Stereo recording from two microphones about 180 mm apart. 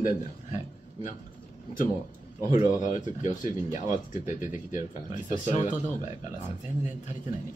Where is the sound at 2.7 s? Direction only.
45° left (ahead or behind).